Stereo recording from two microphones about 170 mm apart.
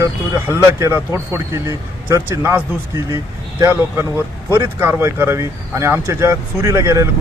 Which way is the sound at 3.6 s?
15° right (ahead or behind).